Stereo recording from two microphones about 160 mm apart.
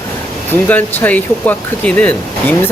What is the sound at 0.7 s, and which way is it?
Speech, 10° left (ahead or behind).